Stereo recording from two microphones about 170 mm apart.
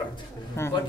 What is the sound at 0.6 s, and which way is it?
Speech, 15° left (ahead or behind).